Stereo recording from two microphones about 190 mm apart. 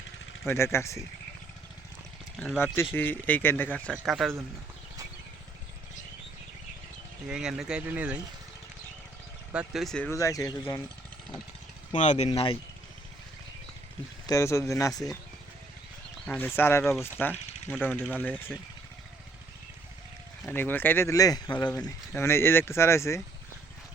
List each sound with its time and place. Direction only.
0.4 s speech: 15° left (ahead or behind)
2.4 s speech: 5° left (ahead or behind)
7.3 s speech: 5° right (ahead or behind)
9.5 s speech: 5° right (ahead or behind)
10.1 s speech: 15° left (ahead or behind)
11.9 s speech: 35° left (ahead or behind)
14.3 s speech: 15° left (ahead or behind)
16.2 s speech: 5° left (ahead or behind)
20.4 s speech: 10° left (ahead or behind)